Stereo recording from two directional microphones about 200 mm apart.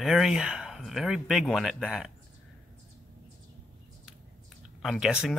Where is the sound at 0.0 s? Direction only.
Centre (ahead or behind).